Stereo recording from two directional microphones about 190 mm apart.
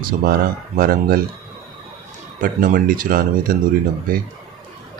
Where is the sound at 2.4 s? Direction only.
45° right (ahead or behind).